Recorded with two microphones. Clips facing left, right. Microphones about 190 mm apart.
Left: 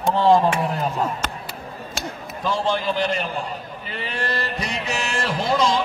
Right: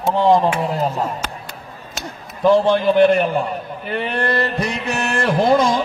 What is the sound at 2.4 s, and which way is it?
A man's voice, 55° right (ahead or behind).